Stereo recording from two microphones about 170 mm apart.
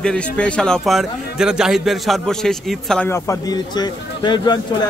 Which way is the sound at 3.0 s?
15° left (ahead or behind).